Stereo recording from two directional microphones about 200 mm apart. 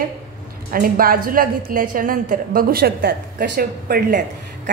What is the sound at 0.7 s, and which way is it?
A woman's voice, 45° right (ahead or behind).